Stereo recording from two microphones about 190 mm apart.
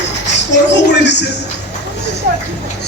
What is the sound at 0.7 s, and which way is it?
Speech, 65° left (ahead or behind).